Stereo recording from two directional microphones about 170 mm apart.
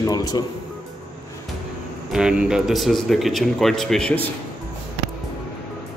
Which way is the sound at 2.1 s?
5° right (ahead or behind).